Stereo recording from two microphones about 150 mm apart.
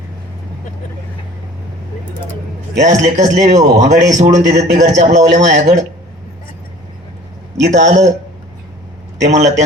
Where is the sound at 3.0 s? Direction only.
55° right (ahead or behind).